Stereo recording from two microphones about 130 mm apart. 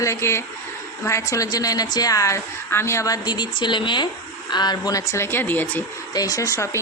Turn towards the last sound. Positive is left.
turn(degrees=25)  # may be behind; listen again after turning